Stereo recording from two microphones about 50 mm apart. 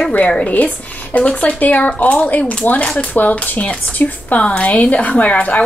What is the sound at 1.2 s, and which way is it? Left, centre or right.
A woman's voice, left.